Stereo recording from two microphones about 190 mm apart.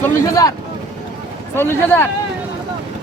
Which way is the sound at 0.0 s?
20° left (ahead or behind).